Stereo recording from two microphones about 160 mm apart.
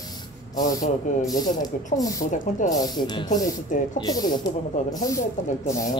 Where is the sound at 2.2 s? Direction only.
50° left (ahead or behind).